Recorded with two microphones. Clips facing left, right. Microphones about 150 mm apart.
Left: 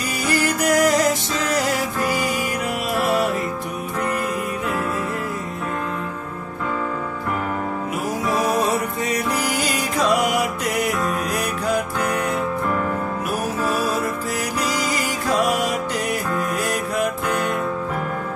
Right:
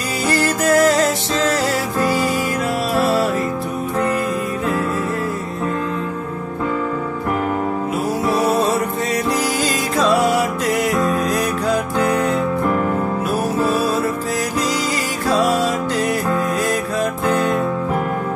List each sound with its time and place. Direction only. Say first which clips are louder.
0.3 s music: right 3 dB; 15° left (ahead or behind)
8.6 s music: right 3 dB; 15° left (ahead or behind)
15.3 s music: right 4 dB; 15° left (ahead or behind)